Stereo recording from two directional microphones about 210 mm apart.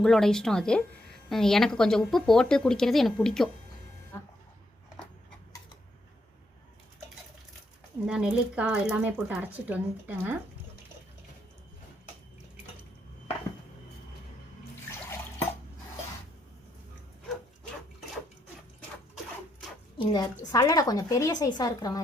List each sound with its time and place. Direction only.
0.0 s a woman's voice: centre (ahead or behind)
8.0 s speech: 5° right (ahead or behind)
14.8 s water: 15° left (ahead or behind)
17.2 s a sound: centre (ahead or behind)
20.0 s a woman's voice: 20° left (ahead or behind)